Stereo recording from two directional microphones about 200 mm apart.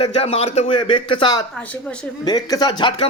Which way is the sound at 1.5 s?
5° left (ahead or behind).